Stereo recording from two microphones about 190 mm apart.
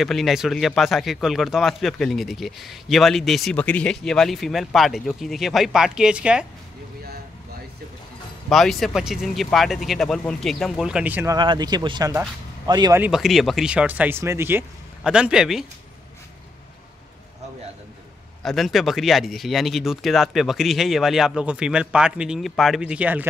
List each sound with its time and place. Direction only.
0.0 s a man's voice: centre (ahead or behind)
8.5 s a man's voice: centre (ahead or behind)
11.3 s speech: 25° right (ahead or behind)
13.0 s a man's voice: centre (ahead or behind)
18.4 s a man's voice: centre (ahead or behind)